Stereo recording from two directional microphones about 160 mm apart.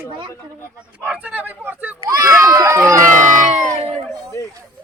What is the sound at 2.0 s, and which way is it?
Run, 20° right (ahead or behind).